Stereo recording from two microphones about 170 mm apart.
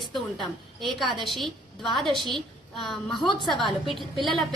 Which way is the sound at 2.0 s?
25° right (ahead or behind).